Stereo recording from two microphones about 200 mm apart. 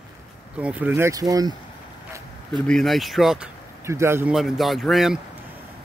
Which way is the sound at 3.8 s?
15° right (ahead or behind).